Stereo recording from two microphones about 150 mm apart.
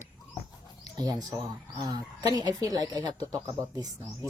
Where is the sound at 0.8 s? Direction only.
25° right (ahead or behind).